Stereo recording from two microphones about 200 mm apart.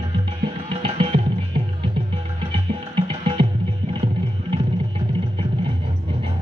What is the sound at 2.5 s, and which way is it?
Music, 25° right (ahead or behind).